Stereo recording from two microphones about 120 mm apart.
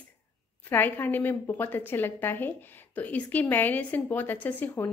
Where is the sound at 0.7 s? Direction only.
15° left (ahead or behind).